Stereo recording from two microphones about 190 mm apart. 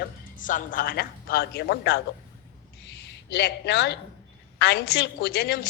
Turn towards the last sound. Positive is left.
turn(degrees=55)  # may be behind; listen again after turning